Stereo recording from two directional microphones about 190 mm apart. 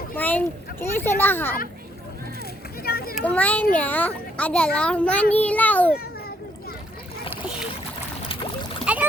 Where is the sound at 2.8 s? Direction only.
55° left (ahead or behind).